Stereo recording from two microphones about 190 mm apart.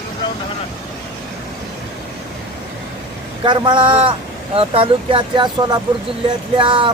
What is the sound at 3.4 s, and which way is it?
Speech, 25° right (ahead or behind).